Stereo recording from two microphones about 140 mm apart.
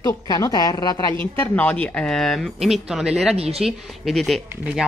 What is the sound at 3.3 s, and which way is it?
Speech, 45° right (ahead or behind).